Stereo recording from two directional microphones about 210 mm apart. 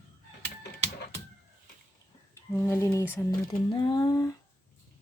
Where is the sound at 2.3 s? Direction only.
10° left (ahead or behind).